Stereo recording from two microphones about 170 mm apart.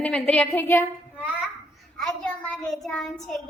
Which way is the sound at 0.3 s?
10° left (ahead or behind).